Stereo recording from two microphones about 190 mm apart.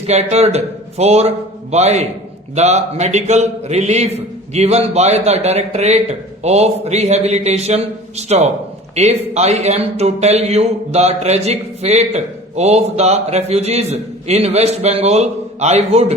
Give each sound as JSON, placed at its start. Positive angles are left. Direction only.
{"t": 0.0, "sound": "a man's voice", "side_deg": -35}